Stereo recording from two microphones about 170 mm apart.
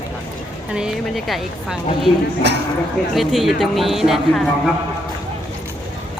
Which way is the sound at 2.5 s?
80° right.